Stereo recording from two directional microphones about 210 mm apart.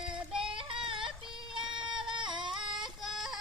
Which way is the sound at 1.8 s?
5° right (ahead or behind).